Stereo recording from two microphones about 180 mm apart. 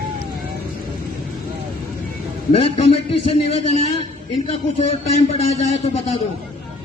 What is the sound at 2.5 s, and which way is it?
A man's voice, 35° left (ahead or behind).